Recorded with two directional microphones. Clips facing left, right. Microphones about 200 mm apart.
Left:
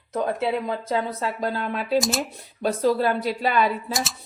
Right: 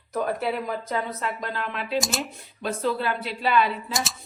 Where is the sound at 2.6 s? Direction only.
40° left (ahead or behind).